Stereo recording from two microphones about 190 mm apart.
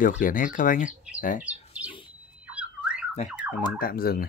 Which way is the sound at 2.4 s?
5° right (ahead or behind).